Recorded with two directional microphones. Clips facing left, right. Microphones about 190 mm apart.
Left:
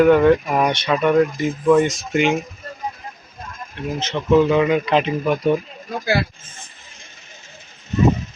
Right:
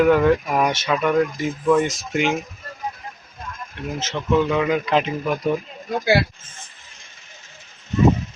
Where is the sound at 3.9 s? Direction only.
Centre (ahead or behind).